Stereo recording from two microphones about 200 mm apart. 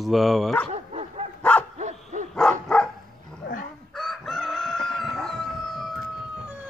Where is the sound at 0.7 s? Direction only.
30° right (ahead or behind).